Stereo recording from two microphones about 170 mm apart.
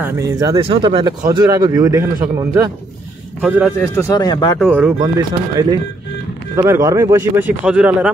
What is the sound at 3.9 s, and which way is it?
Speech, 20° left (ahead or behind).